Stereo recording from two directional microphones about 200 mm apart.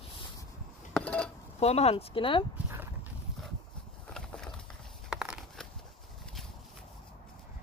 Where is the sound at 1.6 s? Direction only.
30° left (ahead or behind).